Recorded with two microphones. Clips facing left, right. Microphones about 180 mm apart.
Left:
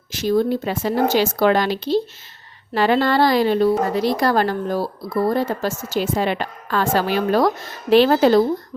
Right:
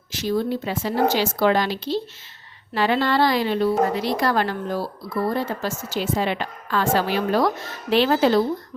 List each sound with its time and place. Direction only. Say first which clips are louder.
0.1 s a woman's voice: left 5 dB; 50° left (ahead or behind)